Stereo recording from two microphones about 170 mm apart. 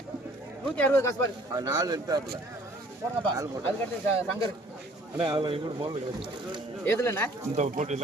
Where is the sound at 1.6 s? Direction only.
20° right (ahead or behind).